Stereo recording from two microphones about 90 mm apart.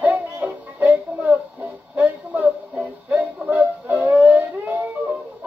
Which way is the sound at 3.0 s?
15° right (ahead or behind).